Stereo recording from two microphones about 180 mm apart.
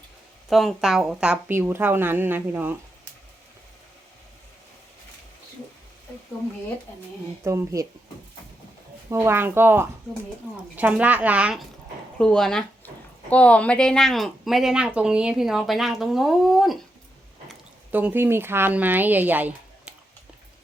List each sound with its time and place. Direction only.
0.5 s a woman's voice: centre (ahead or behind)
7.4 s a woman's voice: 15° right (ahead or behind)
9.0 s a woman's voice: 15° right (ahead or behind)
12.2 s speech: 5° left (ahead or behind)
17.9 s a woman's voice: 10° right (ahead or behind)